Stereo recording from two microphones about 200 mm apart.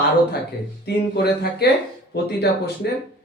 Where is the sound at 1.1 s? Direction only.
55° left (ahead or behind).